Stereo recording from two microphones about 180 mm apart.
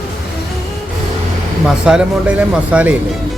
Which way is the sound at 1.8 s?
5° right (ahead or behind).